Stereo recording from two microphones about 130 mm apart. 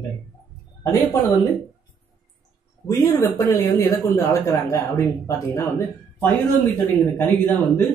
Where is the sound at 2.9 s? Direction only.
25° left (ahead or behind).